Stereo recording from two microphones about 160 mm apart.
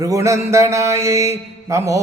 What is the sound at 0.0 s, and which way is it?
Mantra, 20° right (ahead or behind).